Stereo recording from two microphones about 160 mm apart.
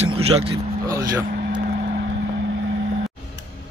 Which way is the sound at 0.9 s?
20° right (ahead or behind).